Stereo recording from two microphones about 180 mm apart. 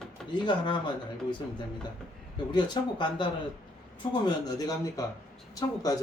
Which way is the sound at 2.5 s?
25° left (ahead or behind).